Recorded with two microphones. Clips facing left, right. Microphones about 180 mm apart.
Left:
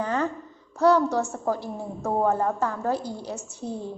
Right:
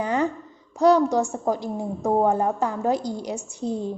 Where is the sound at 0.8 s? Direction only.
15° right (ahead or behind).